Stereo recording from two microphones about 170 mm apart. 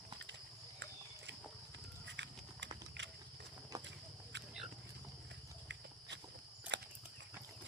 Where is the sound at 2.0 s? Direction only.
90° right.